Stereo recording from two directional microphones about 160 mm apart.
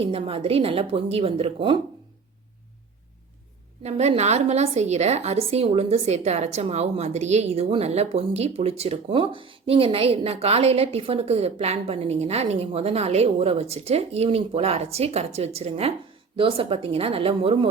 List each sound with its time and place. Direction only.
0.0 s a woman's voice: 35° right (ahead or behind)
3.8 s a woman's voice: 40° right (ahead or behind)